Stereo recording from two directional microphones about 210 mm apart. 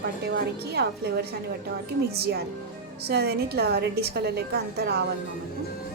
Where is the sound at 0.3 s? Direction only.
50° right (ahead or behind).